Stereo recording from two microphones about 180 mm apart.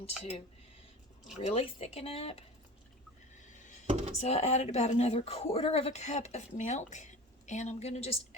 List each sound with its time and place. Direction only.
0.0 s speech: 35° left (ahead or behind)
3.3 s music: 40° left (ahead or behind)
3.8 s a sound: 40° right (ahead or behind)
4.2 s speech: 35° left (ahead or behind)